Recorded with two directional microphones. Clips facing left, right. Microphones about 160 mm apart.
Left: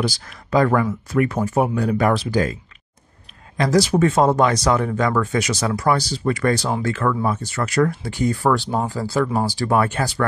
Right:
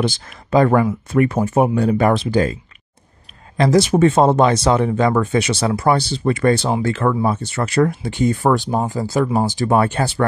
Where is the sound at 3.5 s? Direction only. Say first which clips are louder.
Right 3 dB; 25° right (ahead or behind).